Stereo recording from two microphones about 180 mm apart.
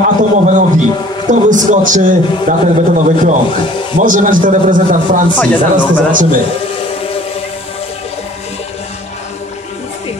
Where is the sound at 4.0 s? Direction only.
50° right (ahead or behind).